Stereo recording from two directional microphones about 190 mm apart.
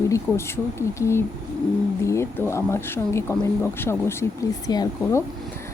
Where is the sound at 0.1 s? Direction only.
15° left (ahead or behind).